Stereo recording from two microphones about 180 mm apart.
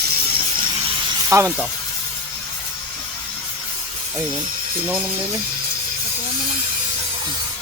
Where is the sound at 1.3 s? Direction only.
20° right (ahead or behind).